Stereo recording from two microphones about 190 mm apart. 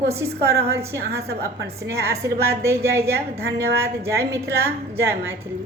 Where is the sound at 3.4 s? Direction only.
55° right (ahead or behind).